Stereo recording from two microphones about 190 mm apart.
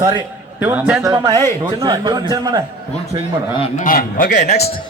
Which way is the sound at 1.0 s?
20° right (ahead or behind).